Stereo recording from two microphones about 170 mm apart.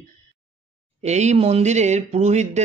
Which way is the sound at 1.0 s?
40° right (ahead or behind).